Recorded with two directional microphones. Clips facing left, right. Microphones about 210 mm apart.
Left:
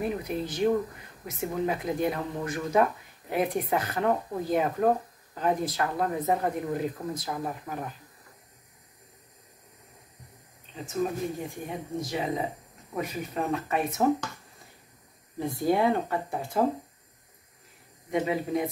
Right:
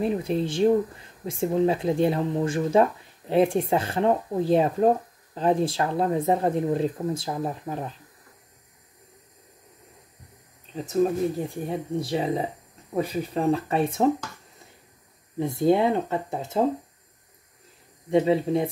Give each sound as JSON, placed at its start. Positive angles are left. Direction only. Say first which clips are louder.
{"t": 0.0, "sound": "speech", "louder": "right 5 dB", "side_deg": -25}
{"t": 11.4, "sound": "speech", "louder": "right 6 dB", "side_deg": -35}
{"t": 15.3, "sound": "speech", "louder": "right 5 dB", "side_deg": -25}
{"t": 18.1, "sound": "speech", "louder": "right 6 dB", "side_deg": -30}